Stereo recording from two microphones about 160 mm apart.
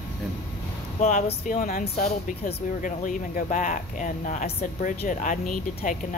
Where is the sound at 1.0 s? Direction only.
50° left (ahead or behind).